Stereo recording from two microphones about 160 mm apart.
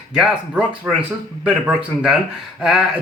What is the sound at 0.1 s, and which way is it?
Speech, 5° right (ahead or behind).